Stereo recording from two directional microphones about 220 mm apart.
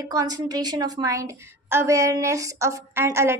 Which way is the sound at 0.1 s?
15° right (ahead or behind).